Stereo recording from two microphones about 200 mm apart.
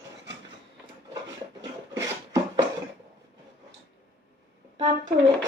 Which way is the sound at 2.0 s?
15° right (ahead or behind).